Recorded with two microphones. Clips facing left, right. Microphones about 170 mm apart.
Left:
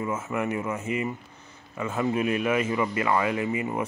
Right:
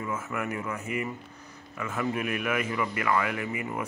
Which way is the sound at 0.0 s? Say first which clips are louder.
Left 4 dB; 25° left (ahead or behind).